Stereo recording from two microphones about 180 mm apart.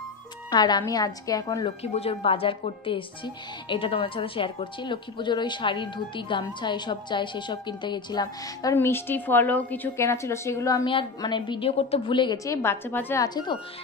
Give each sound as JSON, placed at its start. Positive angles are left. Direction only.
{"t": 0.5, "sound": "speech", "side_deg": 25}
{"t": 1.8, "sound": "a woman's voice", "side_deg": 35}
{"t": 8.7, "sound": "a woman's voice", "side_deg": 10}
{"t": 12.6, "sound": "a woman's voice", "side_deg": 15}